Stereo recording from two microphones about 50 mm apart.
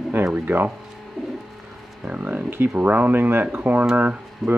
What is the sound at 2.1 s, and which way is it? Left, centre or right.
Speech, right.